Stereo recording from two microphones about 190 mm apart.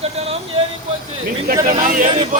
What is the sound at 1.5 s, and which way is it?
Speech, 55° right (ahead or behind).